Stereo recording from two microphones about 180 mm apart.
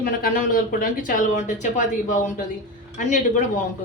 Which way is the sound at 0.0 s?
50° left (ahead or behind).